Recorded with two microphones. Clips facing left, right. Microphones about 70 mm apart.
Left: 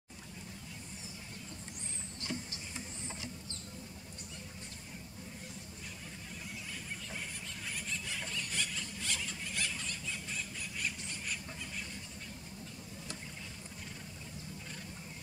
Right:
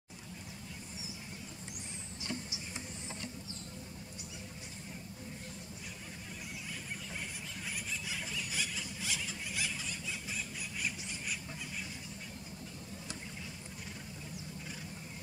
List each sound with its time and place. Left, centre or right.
7.9 s squeal: centre